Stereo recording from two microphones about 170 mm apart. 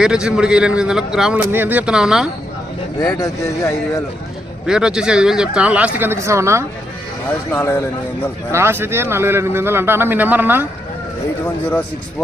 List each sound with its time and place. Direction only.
0.0 s a man's voice: 5° right (ahead or behind)
3.0 s speech: 20° left (ahead or behind)
4.6 s a man's voice: 5° right (ahead or behind)
7.5 s speech: 15° left (ahead or behind)
8.5 s speech: 15° right (ahead or behind)